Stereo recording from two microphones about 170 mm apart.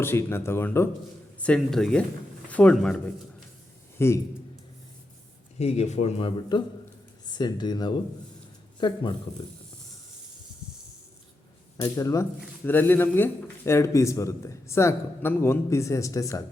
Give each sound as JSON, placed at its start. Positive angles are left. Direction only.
{"t": 0.0, "sound": "speech", "side_deg": 15}
{"t": 3.9, "sound": "a man's voice", "side_deg": 15}
{"t": 5.5, "sound": "a man's voice", "side_deg": 40}
{"t": 11.8, "sound": "speech", "side_deg": 20}